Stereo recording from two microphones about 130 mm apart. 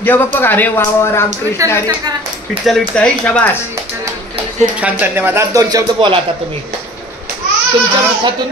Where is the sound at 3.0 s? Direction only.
10° left (ahead or behind).